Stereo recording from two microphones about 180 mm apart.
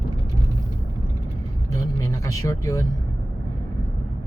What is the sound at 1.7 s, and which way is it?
Vehicle, 20° left (ahead or behind).